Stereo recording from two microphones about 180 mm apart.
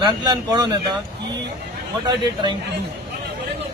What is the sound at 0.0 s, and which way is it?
Speech, 25° right (ahead or behind).